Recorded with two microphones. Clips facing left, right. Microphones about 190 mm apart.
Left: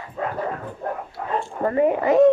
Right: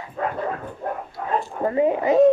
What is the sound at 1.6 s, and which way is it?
Speech, 15° right (ahead or behind).